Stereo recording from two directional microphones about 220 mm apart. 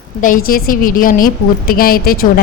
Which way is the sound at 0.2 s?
40° left (ahead or behind).